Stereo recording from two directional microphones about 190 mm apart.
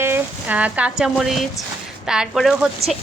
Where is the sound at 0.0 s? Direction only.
10° right (ahead or behind).